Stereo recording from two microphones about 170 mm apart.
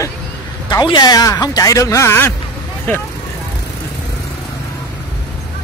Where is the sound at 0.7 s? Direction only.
25° left (ahead or behind).